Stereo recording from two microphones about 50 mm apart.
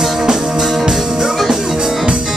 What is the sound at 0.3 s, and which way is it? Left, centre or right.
Music, centre.